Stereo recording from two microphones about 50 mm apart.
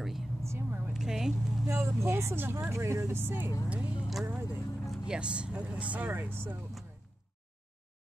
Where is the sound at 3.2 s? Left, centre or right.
Right.